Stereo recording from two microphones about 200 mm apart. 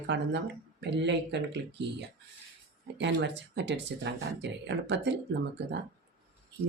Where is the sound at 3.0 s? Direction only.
60° right (ahead or behind).